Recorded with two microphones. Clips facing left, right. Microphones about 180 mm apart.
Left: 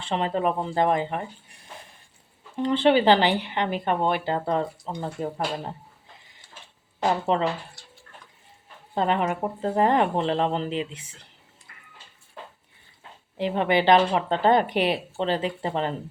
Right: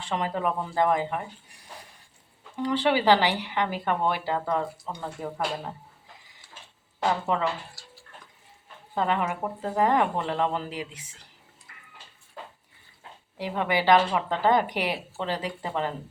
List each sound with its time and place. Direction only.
0.1 s speech: 25° left (ahead or behind)
2.6 s speech: 25° left (ahead or behind)
7.3 s speech: 30° left (ahead or behind)
9.0 s speech: 30° left (ahead or behind)
13.3 s speech: 25° left (ahead or behind)